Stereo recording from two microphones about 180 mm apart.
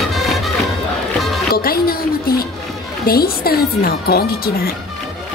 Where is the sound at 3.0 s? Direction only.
55° left (ahead or behind).